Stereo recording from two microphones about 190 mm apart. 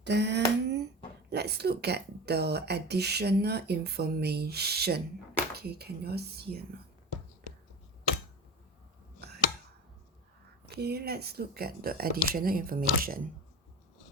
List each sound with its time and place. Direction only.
0.0 s speech: 65° right (ahead or behind)
10.8 s speech: 55° right (ahead or behind)